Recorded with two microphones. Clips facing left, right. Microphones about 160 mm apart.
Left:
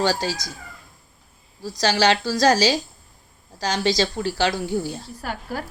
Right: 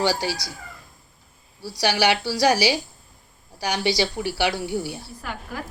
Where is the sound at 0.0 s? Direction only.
15° right (ahead or behind).